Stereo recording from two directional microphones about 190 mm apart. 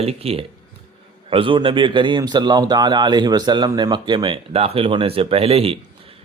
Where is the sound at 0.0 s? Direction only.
30° right (ahead or behind).